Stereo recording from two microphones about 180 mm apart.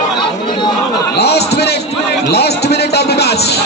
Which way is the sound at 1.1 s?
65° left (ahead or behind).